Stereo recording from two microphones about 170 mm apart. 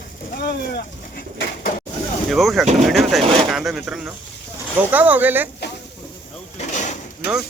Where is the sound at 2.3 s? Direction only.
Centre (ahead or behind).